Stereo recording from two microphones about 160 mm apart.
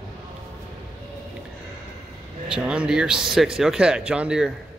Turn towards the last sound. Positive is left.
turn(degrees=-5)  # may be behind; listen again after turning